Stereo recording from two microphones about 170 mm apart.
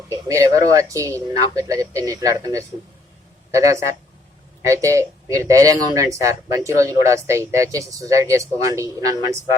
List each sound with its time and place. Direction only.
0.1 s a man's voice: 20° right (ahead or behind)